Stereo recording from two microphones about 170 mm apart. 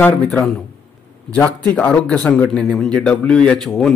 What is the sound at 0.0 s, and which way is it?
A man's voice, 10° left (ahead or behind).